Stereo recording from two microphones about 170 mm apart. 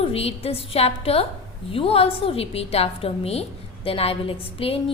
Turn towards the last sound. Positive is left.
turn(degrees=35)  # may be behind; listen again after turning